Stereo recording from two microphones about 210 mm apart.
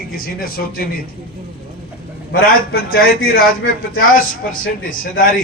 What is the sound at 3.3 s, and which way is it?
Speech, 70° left (ahead or behind).